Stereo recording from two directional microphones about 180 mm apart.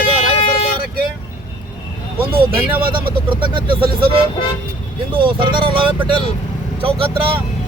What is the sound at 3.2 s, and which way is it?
Speech, 30° right (ahead or behind).